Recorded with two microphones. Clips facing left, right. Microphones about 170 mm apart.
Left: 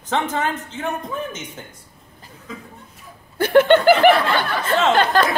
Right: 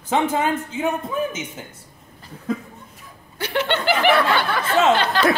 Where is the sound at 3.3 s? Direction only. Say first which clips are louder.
Left 10 dB; 50° left (ahead or behind).